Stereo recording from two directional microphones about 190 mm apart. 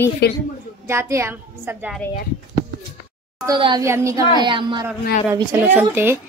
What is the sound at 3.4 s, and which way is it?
A child's voice, 25° right (ahead or behind).